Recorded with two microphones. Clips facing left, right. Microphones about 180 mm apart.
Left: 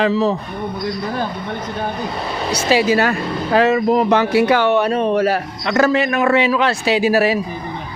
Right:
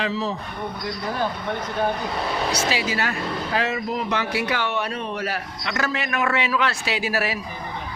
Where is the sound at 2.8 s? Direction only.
55° left (ahead or behind); by 7.4 s 30° left (ahead or behind).